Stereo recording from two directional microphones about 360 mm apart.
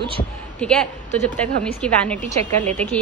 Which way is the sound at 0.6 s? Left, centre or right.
Centre.